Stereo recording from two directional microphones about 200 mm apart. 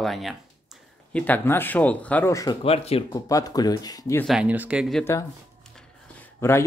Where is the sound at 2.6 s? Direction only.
30° left (ahead or behind).